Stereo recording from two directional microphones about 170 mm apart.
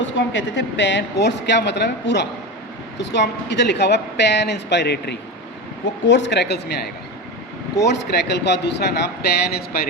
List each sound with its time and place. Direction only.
0.0 s a woman's voice: 90° left
7.9 s speech: 75° left (ahead or behind)